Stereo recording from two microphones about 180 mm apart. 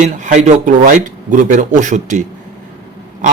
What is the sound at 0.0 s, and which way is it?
A man's voice, 40° right (ahead or behind).